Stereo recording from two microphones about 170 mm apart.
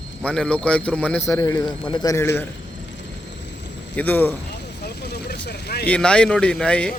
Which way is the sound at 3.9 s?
10° left (ahead or behind).